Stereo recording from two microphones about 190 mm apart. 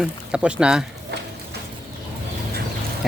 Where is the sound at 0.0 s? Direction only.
5° right (ahead or behind).